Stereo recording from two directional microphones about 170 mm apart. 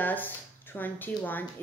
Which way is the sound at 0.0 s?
10° left (ahead or behind).